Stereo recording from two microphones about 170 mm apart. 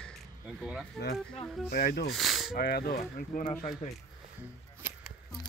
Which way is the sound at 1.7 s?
65° left (ahead or behind).